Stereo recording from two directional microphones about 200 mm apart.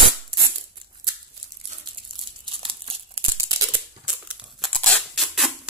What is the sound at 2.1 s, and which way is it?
Crumpling, 25° right (ahead or behind).